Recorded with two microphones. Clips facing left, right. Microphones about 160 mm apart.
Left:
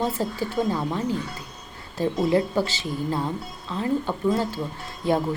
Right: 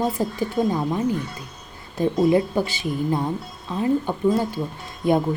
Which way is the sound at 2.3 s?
15° right (ahead or behind).